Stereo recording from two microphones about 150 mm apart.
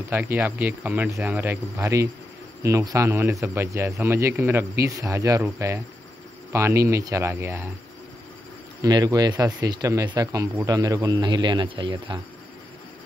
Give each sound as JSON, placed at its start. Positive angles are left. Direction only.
{"t": 0.1, "sound": "speech", "side_deg": -10}
{"t": 8.8, "sound": "speech", "side_deg": -25}